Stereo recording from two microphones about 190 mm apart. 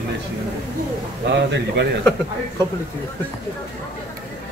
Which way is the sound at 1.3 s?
60° right (ahead or behind).